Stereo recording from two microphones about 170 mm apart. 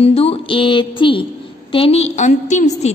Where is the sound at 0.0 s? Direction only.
35° left (ahead or behind).